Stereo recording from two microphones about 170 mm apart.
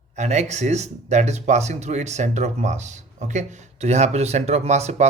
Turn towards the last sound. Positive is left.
turn(degrees=-40)  # may be behind; listen again after turning